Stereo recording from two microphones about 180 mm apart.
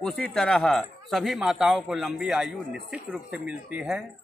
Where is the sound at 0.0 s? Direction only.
5° left (ahead or behind).